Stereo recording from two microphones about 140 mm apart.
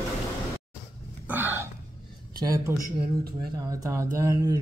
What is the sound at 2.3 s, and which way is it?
Speech, 25° right (ahead or behind).